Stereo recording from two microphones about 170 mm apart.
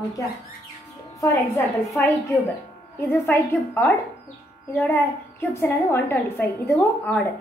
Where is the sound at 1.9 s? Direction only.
20° left (ahead or behind).